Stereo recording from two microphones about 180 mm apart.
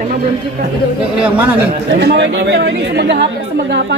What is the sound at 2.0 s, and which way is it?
A woman's voice, 80° right.